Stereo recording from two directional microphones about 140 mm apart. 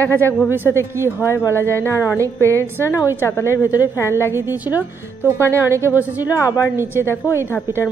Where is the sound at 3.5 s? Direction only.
10° right (ahead or behind).